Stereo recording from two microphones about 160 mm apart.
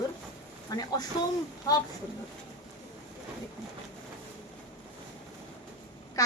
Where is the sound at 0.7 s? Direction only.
25° left (ahead or behind).